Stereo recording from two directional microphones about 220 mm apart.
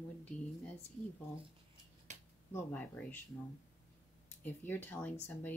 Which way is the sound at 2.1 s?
30° right (ahead or behind).